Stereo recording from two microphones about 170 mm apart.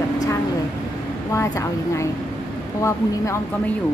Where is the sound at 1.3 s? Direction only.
15° left (ahead or behind).